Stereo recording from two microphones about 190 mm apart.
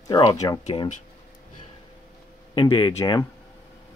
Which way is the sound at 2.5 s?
25° left (ahead or behind).